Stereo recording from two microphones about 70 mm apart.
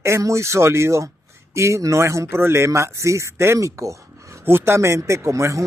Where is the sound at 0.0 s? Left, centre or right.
Right.